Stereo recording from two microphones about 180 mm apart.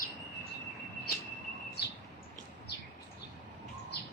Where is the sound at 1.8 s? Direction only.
65° left (ahead or behind).